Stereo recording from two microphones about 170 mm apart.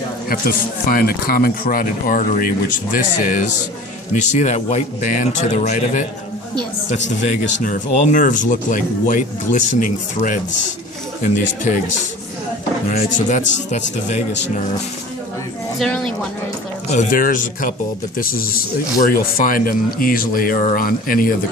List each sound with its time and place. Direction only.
0.3 s speech: 60° left (ahead or behind)
7.4 s speech: 50° left (ahead or behind)
13.0 s speech: 45° left (ahead or behind)
15.8 s speech: 5° left (ahead or behind)
16.9 s speech: 50° left (ahead or behind)